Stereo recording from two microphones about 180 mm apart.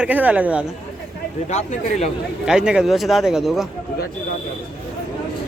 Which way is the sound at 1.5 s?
40° left (ahead or behind).